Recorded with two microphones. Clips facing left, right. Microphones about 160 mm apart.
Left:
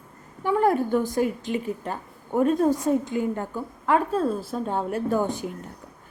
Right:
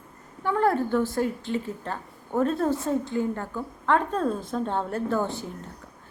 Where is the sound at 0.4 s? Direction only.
15° left (ahead or behind).